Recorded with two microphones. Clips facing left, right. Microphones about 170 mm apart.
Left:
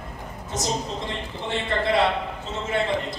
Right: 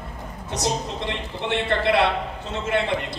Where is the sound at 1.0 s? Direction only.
65° right (ahead or behind).